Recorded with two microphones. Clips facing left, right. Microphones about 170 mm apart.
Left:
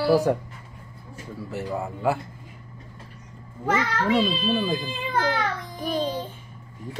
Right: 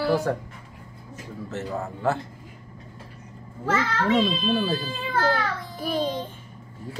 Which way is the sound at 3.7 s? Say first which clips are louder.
Even; 10° left (ahead or behind).